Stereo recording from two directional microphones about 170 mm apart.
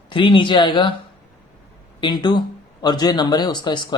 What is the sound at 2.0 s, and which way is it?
Speech, 25° left (ahead or behind).